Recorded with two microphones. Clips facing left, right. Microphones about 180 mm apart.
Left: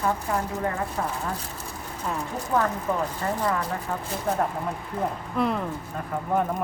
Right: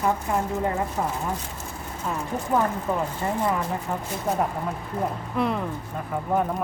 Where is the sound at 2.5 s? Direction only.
15° right (ahead or behind).